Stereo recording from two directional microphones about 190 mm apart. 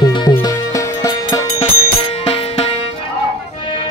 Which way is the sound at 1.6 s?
30° left (ahead or behind).